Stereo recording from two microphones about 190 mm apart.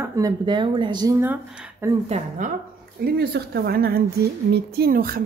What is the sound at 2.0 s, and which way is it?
Speech, 35° right (ahead or behind).